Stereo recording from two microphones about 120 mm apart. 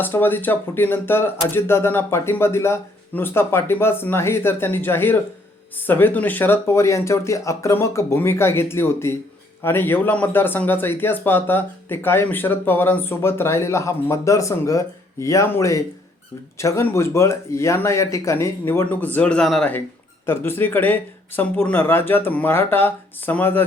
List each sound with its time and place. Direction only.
0.0 s speech: 15° left (ahead or behind)
20.2 s speech: 20° left (ahead or behind)